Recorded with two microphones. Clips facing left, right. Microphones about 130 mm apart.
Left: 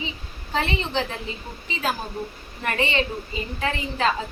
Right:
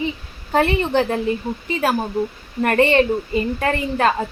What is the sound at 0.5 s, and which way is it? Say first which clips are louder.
A woman's voice: right 8 dB; 55° right (ahead or behind).